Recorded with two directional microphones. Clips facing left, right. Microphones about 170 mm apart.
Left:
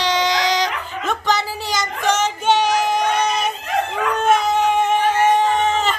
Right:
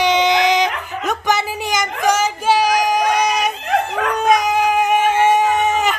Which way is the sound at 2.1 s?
10° right (ahead or behind).